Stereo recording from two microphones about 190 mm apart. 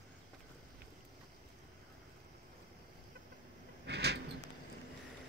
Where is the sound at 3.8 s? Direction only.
65° right (ahead or behind).